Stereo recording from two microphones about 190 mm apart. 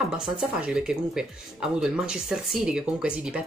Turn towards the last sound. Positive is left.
turn(degrees=-5)  # may be behind; listen again after turning